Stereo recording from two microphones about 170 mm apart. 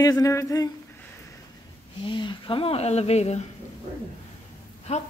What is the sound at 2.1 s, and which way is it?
Speech, 30° left (ahead or behind).